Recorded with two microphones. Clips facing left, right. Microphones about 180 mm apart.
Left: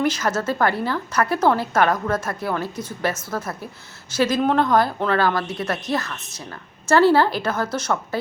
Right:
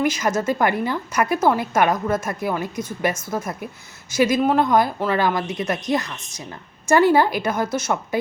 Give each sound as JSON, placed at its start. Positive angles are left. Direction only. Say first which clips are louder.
{"t": 0.0, "sound": "a woman's voice", "louder": "right 1 dB", "side_deg": -10}